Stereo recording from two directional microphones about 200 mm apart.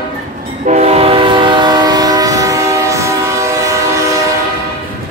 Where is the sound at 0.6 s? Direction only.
35° right (ahead or behind); by 4.0 s 15° right (ahead or behind).